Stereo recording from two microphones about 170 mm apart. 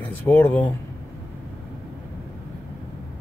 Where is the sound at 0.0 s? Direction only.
10° left (ahead or behind).